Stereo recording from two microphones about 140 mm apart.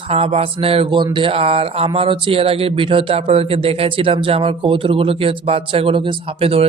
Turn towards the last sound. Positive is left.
turn(degrees=-40)  # may be behind; listen again after turning